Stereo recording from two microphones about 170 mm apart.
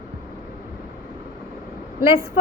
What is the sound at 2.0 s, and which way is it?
Speech, 15° right (ahead or behind).